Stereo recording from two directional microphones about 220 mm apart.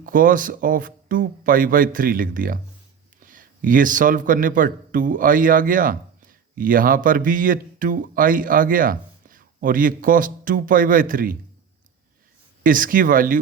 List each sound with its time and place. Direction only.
0.0 s a man's voice: 40° right (ahead or behind)
12.6 s speech: 40° right (ahead or behind)